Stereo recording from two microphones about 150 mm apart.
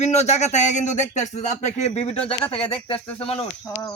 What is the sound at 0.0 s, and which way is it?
Speech, 50° left (ahead or behind).